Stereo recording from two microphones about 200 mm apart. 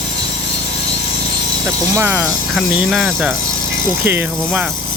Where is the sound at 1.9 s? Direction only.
10° right (ahead or behind).